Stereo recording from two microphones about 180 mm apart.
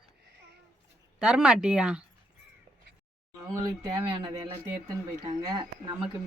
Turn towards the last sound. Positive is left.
turn(degrees=-25)  # may be behind; listen again after turning